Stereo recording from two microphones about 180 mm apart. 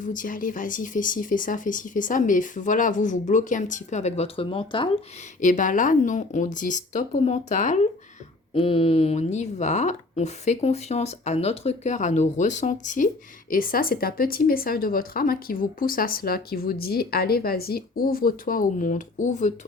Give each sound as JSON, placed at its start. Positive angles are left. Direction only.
{"t": 0.0, "sound": "speech", "side_deg": 45}
{"t": 5.4, "sound": "speech", "side_deg": 45}
{"t": 8.5, "sound": "speech", "side_deg": 30}